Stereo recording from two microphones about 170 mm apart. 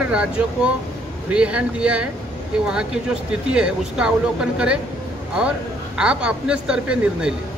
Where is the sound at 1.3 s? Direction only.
5° right (ahead or behind).